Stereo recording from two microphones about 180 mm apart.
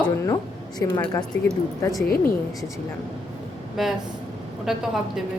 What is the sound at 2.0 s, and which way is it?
Speech, 55° left (ahead or behind).